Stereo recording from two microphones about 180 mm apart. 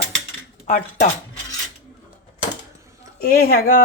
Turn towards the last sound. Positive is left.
turn(degrees=55)  # may be behind; listen again after turning